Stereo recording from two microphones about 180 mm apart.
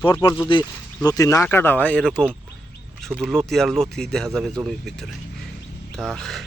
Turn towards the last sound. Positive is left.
turn(degrees=0)  # may be behind; listen again after turning